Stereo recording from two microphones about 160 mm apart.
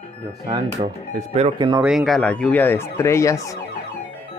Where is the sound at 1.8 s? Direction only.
Centre (ahead or behind); by 3.6 s 20° left (ahead or behind).